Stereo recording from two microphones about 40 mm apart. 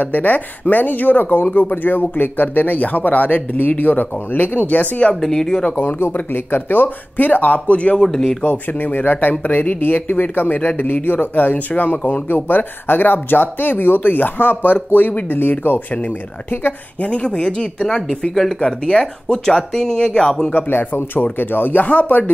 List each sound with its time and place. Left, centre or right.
0.0 s speech: left
5.1 s speech: centre
5.7 s speech: left
8.0 s speech: centre
8.5 s speech: left
17.0 s speech: left
17.6 s speech: centre
20.6 s speech: left